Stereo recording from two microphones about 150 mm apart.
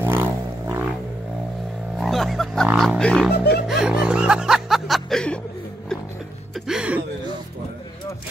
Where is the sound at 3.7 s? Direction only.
5° right (ahead or behind).